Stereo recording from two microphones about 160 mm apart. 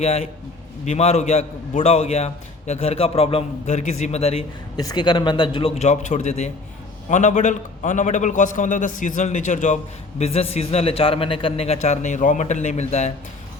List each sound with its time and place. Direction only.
0.0 s a man's voice: 40° left (ahead or behind)
4.8 s a man's voice: 25° left (ahead or behind); by 13.1 s 45° left (ahead or behind)